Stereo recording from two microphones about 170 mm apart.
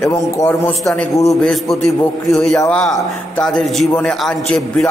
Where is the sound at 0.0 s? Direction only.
15° left (ahead or behind).